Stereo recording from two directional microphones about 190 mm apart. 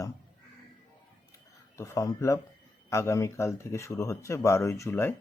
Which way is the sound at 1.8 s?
15° left (ahead or behind).